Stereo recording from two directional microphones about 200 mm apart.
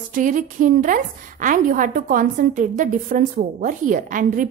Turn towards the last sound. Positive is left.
turn(degrees=-40)  # may be behind; listen again after turning